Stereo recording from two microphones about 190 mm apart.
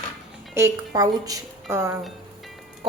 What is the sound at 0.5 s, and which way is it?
A woman's voice, 15° right (ahead or behind).